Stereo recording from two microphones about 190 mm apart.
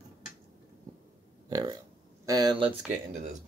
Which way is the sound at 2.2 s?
20° right (ahead or behind).